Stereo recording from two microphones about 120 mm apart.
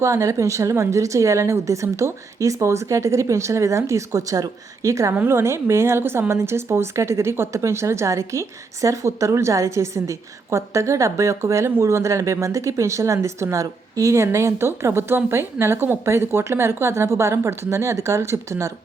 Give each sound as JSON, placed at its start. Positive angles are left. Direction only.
{"t": 0.0, "sound": "speech", "side_deg": -25}